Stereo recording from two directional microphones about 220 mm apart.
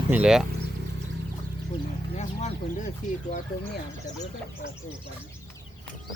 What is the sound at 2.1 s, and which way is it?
Speech, 30° left (ahead or behind).